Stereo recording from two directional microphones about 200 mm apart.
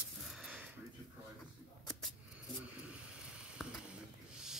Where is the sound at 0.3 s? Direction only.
5° right (ahead or behind).